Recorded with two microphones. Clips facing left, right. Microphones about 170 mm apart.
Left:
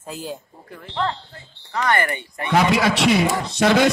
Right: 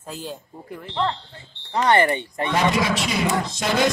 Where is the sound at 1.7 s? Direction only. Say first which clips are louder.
Right 3 dB; 30° right (ahead or behind).